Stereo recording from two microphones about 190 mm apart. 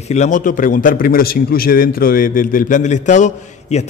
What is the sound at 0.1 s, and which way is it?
A man's voice, 40° left (ahead or behind).